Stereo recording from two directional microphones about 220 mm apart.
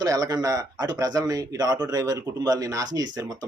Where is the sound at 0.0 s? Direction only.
15° right (ahead or behind).